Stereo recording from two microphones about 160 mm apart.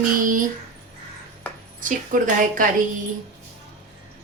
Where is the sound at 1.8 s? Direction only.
60° right (ahead or behind).